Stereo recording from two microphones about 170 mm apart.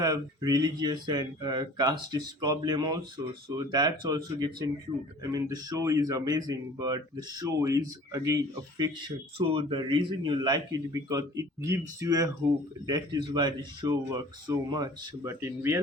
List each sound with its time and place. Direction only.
0.0 s speech: 20° right (ahead or behind)